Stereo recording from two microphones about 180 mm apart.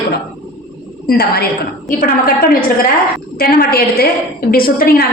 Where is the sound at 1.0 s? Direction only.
60° left (ahead or behind).